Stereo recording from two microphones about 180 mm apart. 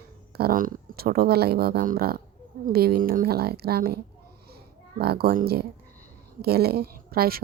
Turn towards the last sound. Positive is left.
turn(degrees=-55)  # may be behind; listen again after turning